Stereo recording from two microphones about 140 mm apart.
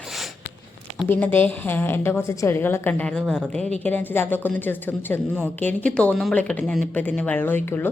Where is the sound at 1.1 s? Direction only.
15° left (ahead or behind).